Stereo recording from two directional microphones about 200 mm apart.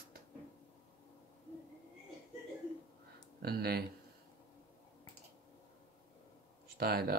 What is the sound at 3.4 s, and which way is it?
Speech, 50° right (ahead or behind).